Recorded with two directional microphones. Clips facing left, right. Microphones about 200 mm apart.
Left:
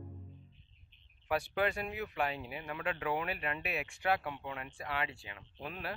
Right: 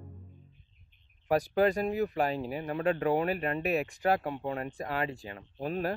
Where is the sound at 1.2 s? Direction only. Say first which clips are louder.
Right 7 dB; 40° right (ahead or behind).